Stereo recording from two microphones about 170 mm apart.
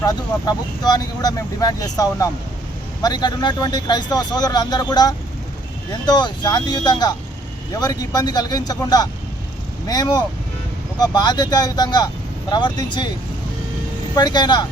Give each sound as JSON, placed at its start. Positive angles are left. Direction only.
{"t": 0.0, "sound": "speech", "side_deg": 20}
{"t": 14.2, "sound": "speech", "side_deg": 25}